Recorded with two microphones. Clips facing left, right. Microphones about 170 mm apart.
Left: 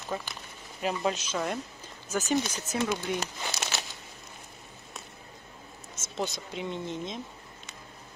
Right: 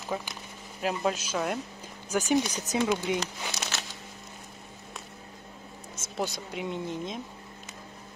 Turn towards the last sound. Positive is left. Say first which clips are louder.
# right 1 dB
turn(degrees=-5)  # may be behind; listen again after turning